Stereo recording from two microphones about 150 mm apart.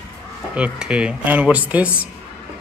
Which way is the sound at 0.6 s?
5° right (ahead or behind).